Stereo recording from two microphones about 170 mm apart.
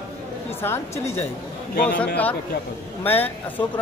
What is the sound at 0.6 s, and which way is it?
Speech, 15° left (ahead or behind).